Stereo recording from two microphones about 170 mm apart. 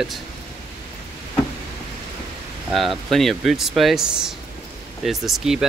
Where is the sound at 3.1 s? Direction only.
Centre (ahead or behind).